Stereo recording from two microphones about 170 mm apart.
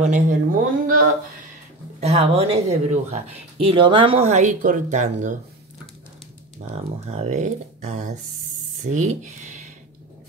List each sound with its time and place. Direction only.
0.0 s speech: 50° right (ahead or behind)
2.0 s speech: 35° right (ahead or behind)
6.6 s speech: 40° right (ahead or behind)